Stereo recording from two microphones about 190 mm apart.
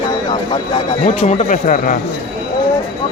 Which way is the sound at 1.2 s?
40° left (ahead or behind).